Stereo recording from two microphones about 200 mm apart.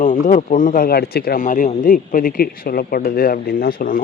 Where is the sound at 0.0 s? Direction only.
40° left (ahead or behind).